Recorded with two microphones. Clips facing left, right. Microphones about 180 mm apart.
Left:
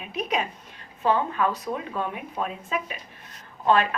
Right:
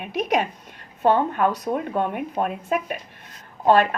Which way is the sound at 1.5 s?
40° right (ahead or behind).